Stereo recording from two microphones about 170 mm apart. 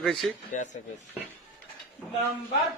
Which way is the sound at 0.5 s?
50° left (ahead or behind).